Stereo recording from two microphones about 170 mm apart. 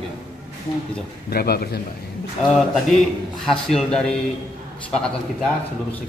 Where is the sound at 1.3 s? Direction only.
65° left (ahead or behind).